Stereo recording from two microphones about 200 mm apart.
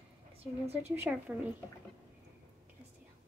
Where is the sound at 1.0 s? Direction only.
10° right (ahead or behind).